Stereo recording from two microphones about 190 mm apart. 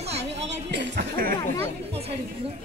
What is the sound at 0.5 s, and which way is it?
Speech, 65° right (ahead or behind).